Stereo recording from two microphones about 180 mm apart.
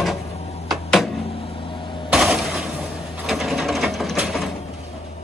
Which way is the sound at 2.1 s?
5° right (ahead or behind).